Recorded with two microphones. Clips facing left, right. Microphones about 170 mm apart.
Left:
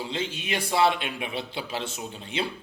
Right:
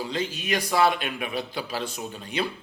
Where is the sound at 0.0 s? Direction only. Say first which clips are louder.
Right 2 dB; 25° left (ahead or behind).